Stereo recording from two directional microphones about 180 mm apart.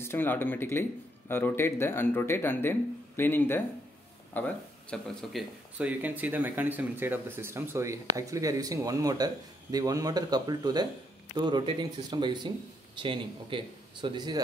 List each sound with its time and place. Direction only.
0.0 s speech: 10° left (ahead or behind); by 14.4 s 25° right (ahead or behind)